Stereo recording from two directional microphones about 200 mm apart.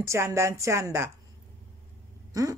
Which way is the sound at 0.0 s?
15° right (ahead or behind).